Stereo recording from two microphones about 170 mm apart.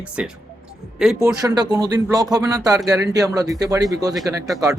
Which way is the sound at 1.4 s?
25° right (ahead or behind).